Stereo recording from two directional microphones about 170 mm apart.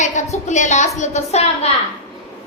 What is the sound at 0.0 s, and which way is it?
A woman's voice, 45° left (ahead or behind).